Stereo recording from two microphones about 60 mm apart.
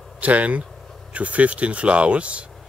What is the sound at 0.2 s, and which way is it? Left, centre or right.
Speech, right.